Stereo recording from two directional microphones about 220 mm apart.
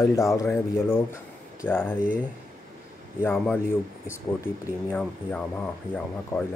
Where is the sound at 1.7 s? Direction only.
10° left (ahead or behind).